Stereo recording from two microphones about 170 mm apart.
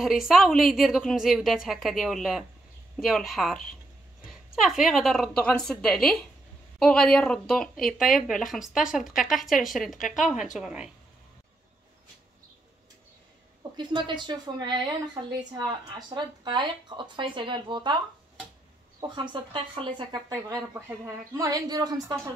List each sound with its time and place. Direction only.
0.0 s a woman's voice: centre (ahead or behind)
13.7 s speech: 25° right (ahead or behind)
18.9 s speech: 25° right (ahead or behind)